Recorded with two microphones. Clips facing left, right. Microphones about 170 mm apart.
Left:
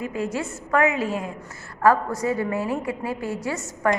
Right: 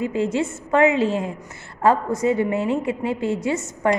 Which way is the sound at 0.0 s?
25° right (ahead or behind).